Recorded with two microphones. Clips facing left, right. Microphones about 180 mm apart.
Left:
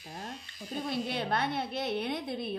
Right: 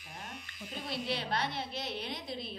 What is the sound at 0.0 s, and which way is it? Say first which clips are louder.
Electric shaver: left 5 dB; 30° left (ahead or behind).